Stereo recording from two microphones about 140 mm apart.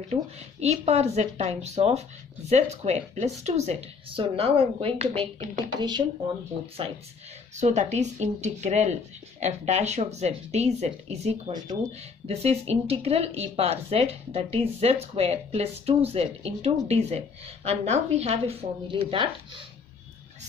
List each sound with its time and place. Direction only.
0.1 s speech: 50° right (ahead or behind)
5.8 s speech: 30° right (ahead or behind)
7.5 s speech: 55° right (ahead or behind); by 19.2 s 40° right (ahead or behind)